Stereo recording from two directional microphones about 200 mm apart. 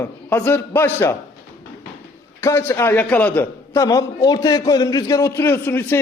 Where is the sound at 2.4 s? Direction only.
10° left (ahead or behind).